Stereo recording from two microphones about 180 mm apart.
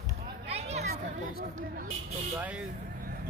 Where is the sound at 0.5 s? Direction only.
35° right (ahead or behind).